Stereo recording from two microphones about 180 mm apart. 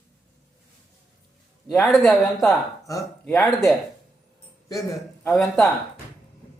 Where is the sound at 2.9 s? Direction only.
15° left (ahead or behind).